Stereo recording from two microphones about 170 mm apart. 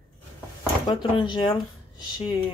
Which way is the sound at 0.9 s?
25° left (ahead or behind).